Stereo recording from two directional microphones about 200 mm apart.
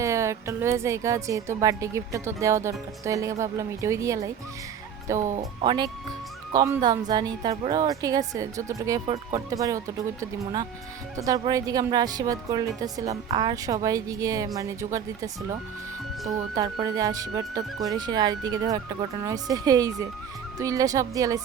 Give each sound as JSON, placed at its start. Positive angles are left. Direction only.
{"t": 0.0, "sound": "a woman's voice", "side_deg": -15}
{"t": 5.4, "sound": "a woman's voice", "side_deg": -20}